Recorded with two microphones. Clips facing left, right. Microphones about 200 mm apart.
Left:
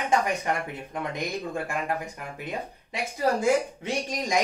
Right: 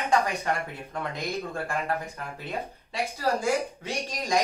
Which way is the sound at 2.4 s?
15° left (ahead or behind).